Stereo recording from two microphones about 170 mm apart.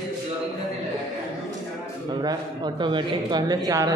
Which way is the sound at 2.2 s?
25° right (ahead or behind).